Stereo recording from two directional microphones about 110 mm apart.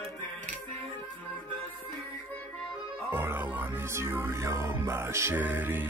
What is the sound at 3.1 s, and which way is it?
Music, 15° right (ahead or behind).